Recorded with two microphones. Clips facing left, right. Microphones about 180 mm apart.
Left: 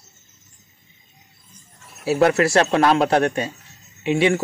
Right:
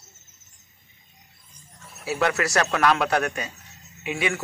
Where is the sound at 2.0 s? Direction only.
35° left (ahead or behind).